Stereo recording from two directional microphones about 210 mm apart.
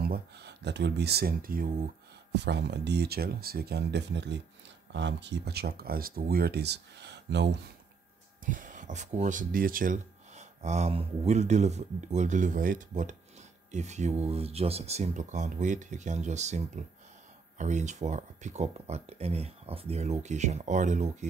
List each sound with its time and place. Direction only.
0.0 s speech: 50° right (ahead or behind)
2.3 s speech: 55° right (ahead or behind)
8.5 s speech: 40° right (ahead or behind)